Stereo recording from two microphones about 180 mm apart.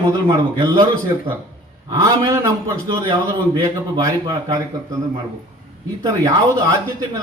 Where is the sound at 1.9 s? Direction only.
20° right (ahead or behind).